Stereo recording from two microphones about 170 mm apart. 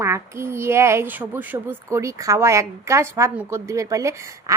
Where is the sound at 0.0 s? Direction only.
15° right (ahead or behind).